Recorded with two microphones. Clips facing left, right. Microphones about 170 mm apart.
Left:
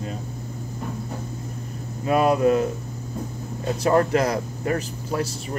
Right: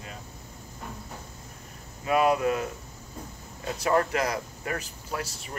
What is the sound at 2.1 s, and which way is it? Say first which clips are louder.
Speech: left 5 dB; 30° left (ahead or behind).